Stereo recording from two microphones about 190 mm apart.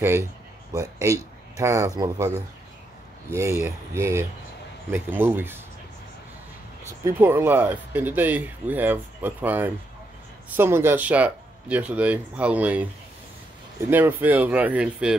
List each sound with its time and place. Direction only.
1.0 s speech: 15° right (ahead or behind)
7.1 s speech: 10° right (ahead or behind)
13.8 s speech: 10° right (ahead or behind)